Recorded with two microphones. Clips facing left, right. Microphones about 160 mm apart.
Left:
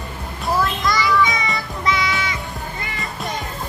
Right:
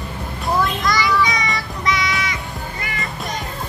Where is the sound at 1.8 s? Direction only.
25° left (ahead or behind).